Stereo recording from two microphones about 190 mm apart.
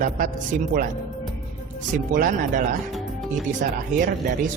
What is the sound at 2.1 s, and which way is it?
Speech, 45° right (ahead or behind).